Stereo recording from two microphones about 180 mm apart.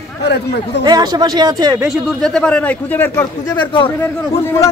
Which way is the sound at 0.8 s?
20° right (ahead or behind).